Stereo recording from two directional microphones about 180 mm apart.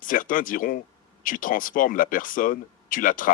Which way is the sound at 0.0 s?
50° left (ahead or behind).